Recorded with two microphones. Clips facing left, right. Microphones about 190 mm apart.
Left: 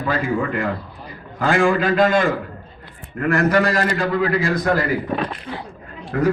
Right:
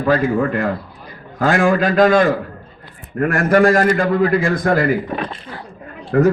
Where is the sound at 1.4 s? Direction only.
45° right (ahead or behind).